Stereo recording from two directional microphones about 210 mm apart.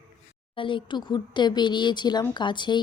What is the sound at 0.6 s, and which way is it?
Speech, 25° left (ahead or behind).